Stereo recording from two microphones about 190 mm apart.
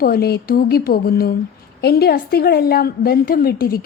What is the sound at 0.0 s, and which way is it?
A woman's voice, 55° left (ahead or behind).